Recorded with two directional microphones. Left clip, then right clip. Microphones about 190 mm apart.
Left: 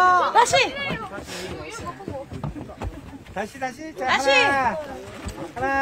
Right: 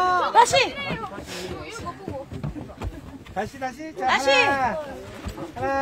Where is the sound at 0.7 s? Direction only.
Centre (ahead or behind).